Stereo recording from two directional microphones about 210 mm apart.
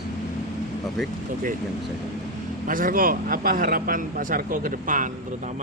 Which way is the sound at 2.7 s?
40° right (ahead or behind).